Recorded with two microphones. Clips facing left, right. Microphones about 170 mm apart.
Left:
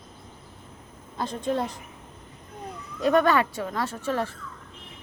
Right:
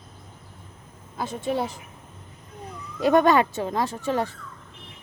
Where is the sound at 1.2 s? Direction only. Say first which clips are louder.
Right 1 dB; 5° right (ahead or behind).